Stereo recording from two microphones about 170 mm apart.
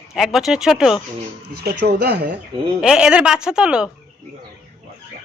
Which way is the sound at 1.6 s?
75° right (ahead or behind).